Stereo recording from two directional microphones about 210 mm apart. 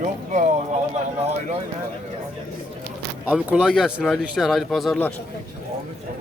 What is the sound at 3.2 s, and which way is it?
A man's voice, 5° right (ahead or behind).